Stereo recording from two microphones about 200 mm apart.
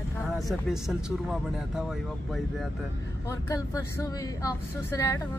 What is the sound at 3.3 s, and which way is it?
Speech, 15° left (ahead or behind).